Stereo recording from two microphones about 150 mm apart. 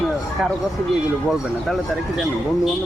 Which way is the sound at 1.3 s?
Centre (ahead or behind).